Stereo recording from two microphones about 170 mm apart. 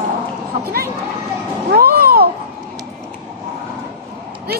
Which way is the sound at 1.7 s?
60° right (ahead or behind).